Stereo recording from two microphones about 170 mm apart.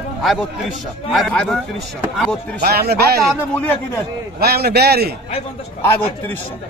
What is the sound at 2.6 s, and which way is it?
Speech, 65° right (ahead or behind).